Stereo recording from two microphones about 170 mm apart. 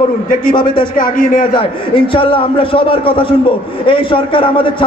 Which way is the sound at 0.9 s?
55° left (ahead or behind).